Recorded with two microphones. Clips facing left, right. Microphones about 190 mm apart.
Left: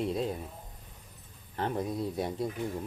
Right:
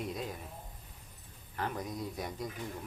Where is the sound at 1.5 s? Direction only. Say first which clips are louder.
Left 6 dB; 30° left (ahead or behind).